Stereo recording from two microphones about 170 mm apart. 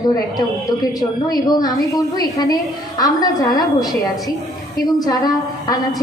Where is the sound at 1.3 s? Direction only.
20° left (ahead or behind).